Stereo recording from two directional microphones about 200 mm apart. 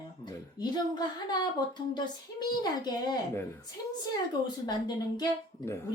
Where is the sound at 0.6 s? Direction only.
20° left (ahead or behind).